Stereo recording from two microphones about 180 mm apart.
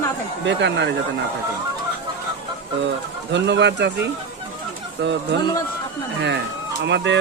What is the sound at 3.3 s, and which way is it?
Speech, 75° right (ahead or behind).